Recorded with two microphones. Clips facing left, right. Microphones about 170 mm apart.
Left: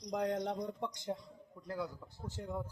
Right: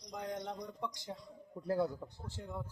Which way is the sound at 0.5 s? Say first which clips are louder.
Left 3 dB; 25° left (ahead or behind).